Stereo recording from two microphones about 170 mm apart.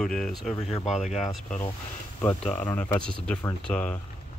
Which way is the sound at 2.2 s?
10° left (ahead or behind).